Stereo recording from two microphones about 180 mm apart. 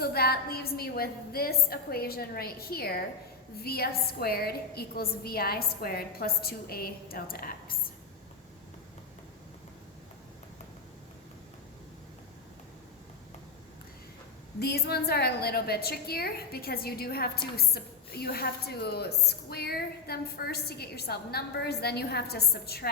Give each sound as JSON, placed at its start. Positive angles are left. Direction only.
{"t": 0.0, "sound": "a woman's voice", "side_deg": 60}
{"t": 14.6, "sound": "a woman's voice", "side_deg": 65}